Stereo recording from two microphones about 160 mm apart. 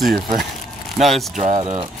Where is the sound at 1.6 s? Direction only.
35° right (ahead or behind).